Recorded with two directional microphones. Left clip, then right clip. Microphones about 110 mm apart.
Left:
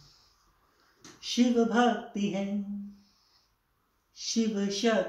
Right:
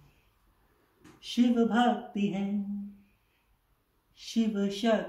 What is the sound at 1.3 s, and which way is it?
Speech, 65° right (ahead or behind).